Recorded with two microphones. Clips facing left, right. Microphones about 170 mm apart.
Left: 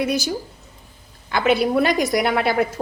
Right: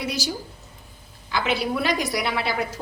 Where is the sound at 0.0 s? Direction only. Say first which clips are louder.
Left 7 dB; 55° left (ahead or behind).